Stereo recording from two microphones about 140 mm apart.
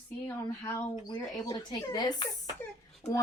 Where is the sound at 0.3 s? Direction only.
20° left (ahead or behind).